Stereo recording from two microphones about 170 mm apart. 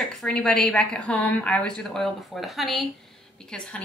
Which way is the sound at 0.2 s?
5° left (ahead or behind).